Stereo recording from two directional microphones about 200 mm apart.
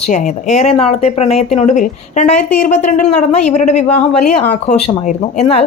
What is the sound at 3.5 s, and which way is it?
A woman's voice, 35° left (ahead or behind).